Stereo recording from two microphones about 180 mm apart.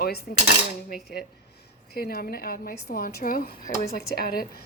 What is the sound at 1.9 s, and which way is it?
A woman's voice, 60° left (ahead or behind).